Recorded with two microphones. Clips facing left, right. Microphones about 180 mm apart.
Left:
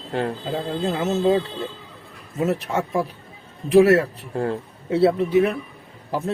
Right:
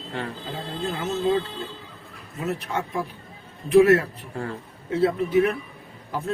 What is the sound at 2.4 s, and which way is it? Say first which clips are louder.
A man's voice: left 4 dB; 40° left (ahead or behind).